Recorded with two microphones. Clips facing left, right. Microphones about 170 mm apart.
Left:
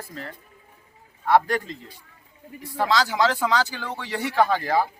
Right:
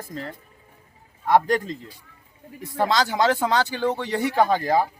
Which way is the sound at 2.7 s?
20° right (ahead or behind).